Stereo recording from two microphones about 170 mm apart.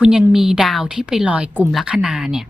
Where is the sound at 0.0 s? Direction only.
5° right (ahead or behind).